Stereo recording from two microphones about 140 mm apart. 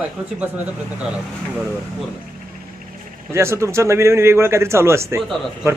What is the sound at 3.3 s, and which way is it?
A man's voice, 20° right (ahead or behind).